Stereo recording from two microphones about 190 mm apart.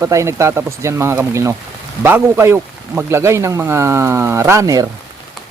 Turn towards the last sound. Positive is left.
turn(degrees=-15)  # may be behind; listen again after turning